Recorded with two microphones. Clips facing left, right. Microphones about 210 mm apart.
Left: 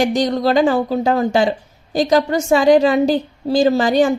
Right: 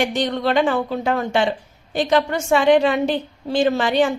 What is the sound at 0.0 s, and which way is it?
Speech, 40° left (ahead or behind).